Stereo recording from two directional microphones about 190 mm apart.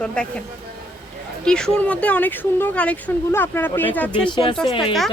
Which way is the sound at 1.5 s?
5° left (ahead or behind).